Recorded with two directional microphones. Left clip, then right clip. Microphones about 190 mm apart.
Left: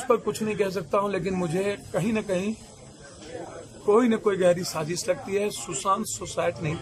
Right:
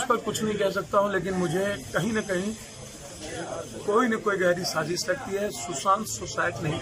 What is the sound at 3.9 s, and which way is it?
A man's voice, 15° left (ahead or behind).